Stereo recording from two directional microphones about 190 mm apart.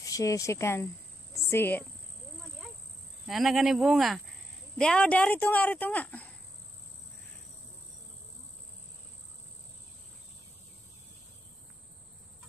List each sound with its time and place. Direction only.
0.0 s speech: 15° left (ahead or behind)
3.3 s speech: centre (ahead or behind)